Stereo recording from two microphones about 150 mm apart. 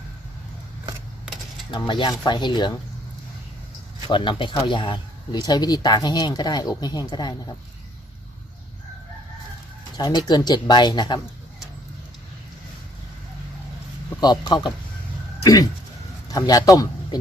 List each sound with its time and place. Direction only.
1.3 s mechanisms: 5° right (ahead or behind)
1.9 s speech: 30° left (ahead or behind)
4.1 s speech: 35° left (ahead or behind)
10.0 s speech: 25° left (ahead or behind)
14.2 s speech: 30° left (ahead or behind)
16.3 s a man's voice: 25° left (ahead or behind)